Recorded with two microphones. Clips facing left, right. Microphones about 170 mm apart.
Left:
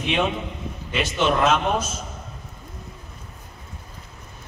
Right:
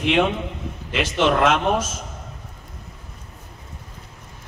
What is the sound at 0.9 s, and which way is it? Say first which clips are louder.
Speech: right 2 dB; 90° right.